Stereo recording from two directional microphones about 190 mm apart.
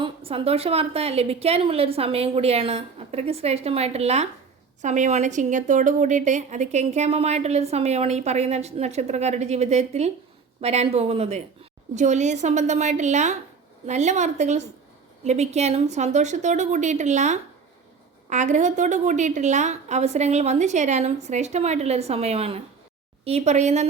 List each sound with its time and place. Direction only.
0.0 s a woman's voice: 30° right (ahead or behind)